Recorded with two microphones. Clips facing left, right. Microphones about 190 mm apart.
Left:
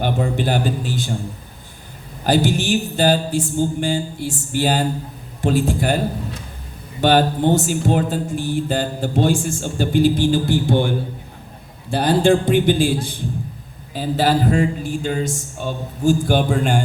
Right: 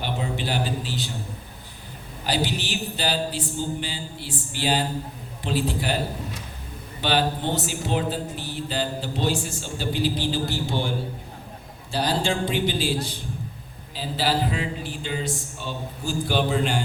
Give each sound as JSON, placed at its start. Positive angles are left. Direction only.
{"t": 0.0, "sound": "music", "side_deg": 50}
{"t": 2.2, "sound": "music", "side_deg": 50}
{"t": 7.0, "sound": "music", "side_deg": 50}